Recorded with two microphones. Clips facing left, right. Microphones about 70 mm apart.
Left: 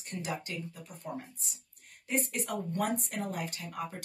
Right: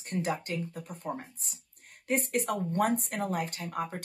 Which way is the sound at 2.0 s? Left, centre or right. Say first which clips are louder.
Right 4 dB; right.